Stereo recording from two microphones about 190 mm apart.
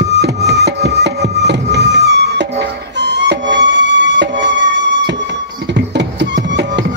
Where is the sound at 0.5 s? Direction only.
60° right (ahead or behind).